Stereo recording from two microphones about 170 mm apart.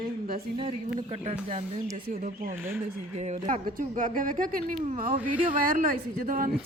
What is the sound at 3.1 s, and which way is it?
A woman's voice, 40° right (ahead or behind).